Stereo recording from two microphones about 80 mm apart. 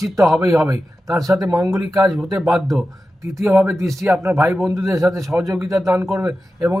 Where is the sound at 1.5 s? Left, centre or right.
Right.